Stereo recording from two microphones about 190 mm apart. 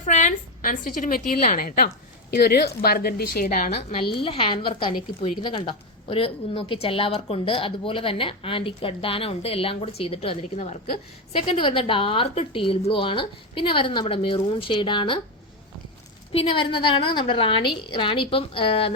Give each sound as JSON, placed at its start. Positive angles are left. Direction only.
{"t": 0.0, "sound": "a woman's voice", "side_deg": 40}
{"t": 3.8, "sound": "a woman's voice", "side_deg": 30}
{"t": 16.3, "sound": "a woman's voice", "side_deg": 30}